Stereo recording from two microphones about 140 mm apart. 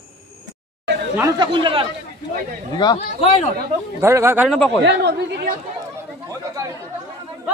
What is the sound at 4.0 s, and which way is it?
Speech, 15° right (ahead or behind).